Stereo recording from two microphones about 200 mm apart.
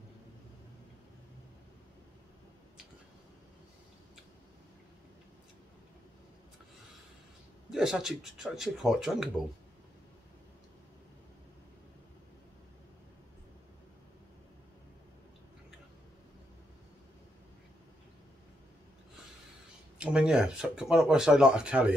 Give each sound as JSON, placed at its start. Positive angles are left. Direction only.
{"t": 7.7, "sound": "speech", "side_deg": 0}
{"t": 20.0, "sound": "speech", "side_deg": -5}